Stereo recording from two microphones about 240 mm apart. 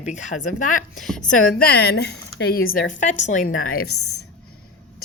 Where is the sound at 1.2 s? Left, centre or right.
Left.